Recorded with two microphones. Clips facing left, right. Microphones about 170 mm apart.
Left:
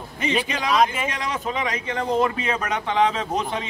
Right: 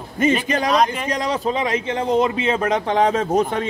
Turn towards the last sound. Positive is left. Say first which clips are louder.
# right 7 dB
turn(degrees=-50)  # may be behind; listen again after turning